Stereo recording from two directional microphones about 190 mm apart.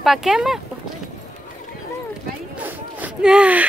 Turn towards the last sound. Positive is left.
turn(degrees=-5)  # may be behind; listen again after turning